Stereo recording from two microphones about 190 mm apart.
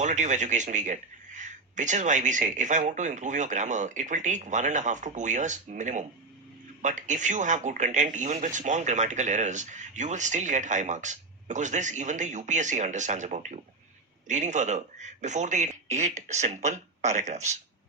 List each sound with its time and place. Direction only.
0.0 s speech: 40° right (ahead or behind)